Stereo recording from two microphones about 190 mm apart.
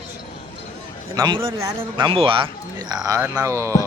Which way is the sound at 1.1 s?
20° right (ahead or behind).